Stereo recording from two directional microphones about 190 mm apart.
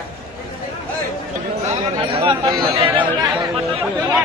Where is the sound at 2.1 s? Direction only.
25° right (ahead or behind).